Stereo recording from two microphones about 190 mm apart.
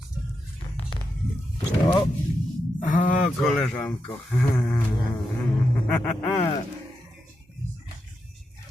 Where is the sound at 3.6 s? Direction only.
5° left (ahead or behind).